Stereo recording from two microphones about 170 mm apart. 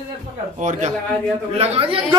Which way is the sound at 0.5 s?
45° right (ahead or behind).